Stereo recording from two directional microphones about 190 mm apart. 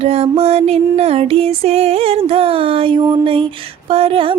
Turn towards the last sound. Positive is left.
turn(degrees=-30)  # may be behind; listen again after turning